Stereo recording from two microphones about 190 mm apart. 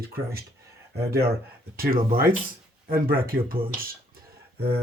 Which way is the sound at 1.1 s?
55° right (ahead or behind).